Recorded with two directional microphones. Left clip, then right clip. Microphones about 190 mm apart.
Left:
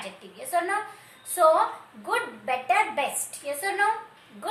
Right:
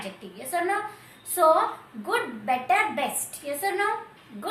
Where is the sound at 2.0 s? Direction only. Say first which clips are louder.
Right 1 dB; 20° left (ahead or behind).